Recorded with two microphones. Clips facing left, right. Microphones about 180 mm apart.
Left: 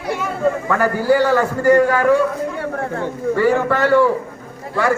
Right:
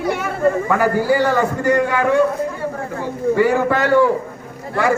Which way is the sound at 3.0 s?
15° right (ahead or behind).